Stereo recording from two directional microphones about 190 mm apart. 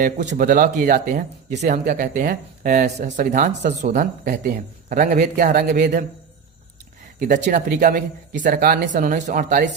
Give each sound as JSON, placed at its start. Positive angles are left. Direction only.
{"t": 0.0, "sound": "speech", "side_deg": -45}
{"t": 7.3, "sound": "speech", "side_deg": -40}